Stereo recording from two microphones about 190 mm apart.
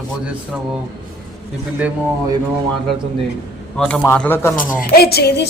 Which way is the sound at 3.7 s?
5° left (ahead or behind).